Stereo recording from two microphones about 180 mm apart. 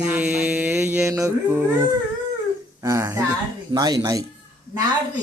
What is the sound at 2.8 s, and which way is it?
Speech, 20° right (ahead or behind).